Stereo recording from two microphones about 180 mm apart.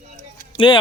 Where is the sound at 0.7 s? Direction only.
25° left (ahead or behind).